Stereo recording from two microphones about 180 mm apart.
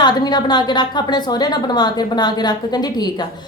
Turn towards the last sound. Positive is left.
turn(degrees=20)  # may be behind; listen again after turning